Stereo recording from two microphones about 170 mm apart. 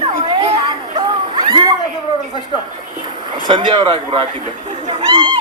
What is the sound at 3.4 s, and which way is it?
Speech, 30° right (ahead or behind).